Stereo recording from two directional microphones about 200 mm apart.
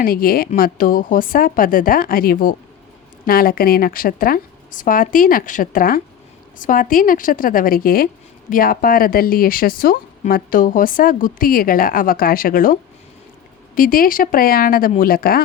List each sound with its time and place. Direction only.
0.0 s speech: 45° left (ahead or behind)
13.7 s speech: 45° left (ahead or behind)